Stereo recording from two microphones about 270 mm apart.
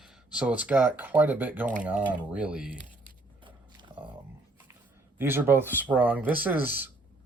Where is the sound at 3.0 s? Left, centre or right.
Centre.